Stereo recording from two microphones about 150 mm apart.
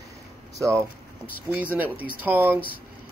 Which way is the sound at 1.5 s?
15° right (ahead or behind).